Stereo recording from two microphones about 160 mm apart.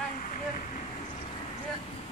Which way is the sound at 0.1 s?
55° left (ahead or behind).